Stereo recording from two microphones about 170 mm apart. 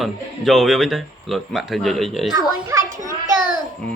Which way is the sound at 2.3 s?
20° right (ahead or behind).